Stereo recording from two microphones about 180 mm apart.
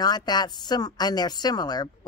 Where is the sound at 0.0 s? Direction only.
20° left (ahead or behind).